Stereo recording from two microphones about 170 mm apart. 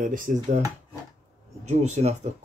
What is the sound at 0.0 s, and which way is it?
Speech, 50° right (ahead or behind).